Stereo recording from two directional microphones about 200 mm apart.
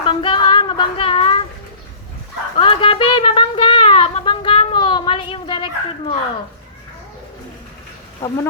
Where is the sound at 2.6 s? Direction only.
25° left (ahead or behind).